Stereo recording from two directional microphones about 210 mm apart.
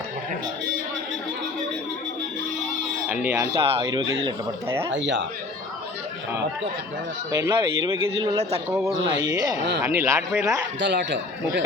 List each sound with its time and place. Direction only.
3.1 s speech: 10° right (ahead or behind)
3.6 s speech: 25° right (ahead or behind)
4.3 s speech: 10° right (ahead or behind)
4.9 s speech: 60° right (ahead or behind)
7.3 s speech: 15° right (ahead or behind)
10.8 s speech: 55° right (ahead or behind)